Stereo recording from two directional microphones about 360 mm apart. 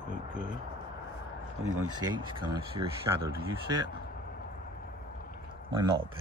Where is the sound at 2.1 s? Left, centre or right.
Centre.